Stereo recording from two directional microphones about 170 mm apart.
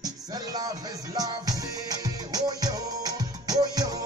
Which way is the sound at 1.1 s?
20° right (ahead or behind).